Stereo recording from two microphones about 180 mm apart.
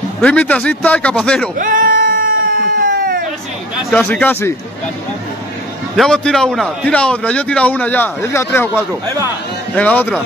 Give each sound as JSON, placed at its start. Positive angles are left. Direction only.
{"t": 0.2, "sound": "a man's voice", "side_deg": 5}
{"t": 1.6, "sound": "sheep", "side_deg": -50}
{"t": 3.9, "sound": "a man's voice", "side_deg": 10}
{"t": 5.9, "sound": "a man's voice", "side_deg": 5}